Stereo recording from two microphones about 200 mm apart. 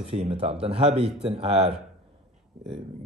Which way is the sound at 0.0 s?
30° right (ahead or behind).